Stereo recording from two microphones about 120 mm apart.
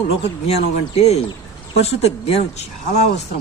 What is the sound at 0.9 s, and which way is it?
Speech, 60° left (ahead or behind).